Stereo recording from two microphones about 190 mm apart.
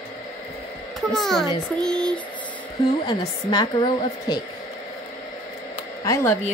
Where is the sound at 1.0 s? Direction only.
Centre (ahead or behind).